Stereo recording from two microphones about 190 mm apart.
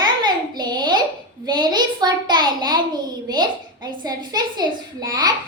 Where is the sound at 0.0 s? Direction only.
20° right (ahead or behind).